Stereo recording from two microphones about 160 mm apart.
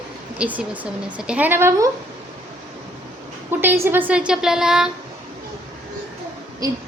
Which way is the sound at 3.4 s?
15° right (ahead or behind).